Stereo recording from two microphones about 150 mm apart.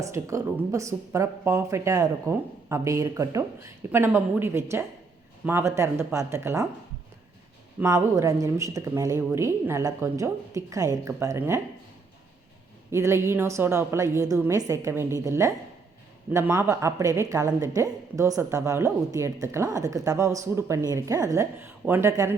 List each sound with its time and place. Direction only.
0.0 s a woman's voice: 20° right (ahead or behind)
7.8 s speech: 20° right (ahead or behind)
12.9 s a woman's voice: 20° right (ahead or behind)